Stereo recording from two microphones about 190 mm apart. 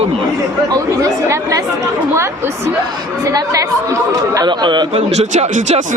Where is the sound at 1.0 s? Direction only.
20° right (ahead or behind).